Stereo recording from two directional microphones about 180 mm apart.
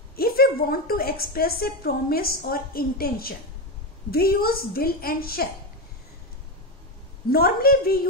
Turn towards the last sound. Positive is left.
turn(degrees=55)  # may be behind; listen again after turning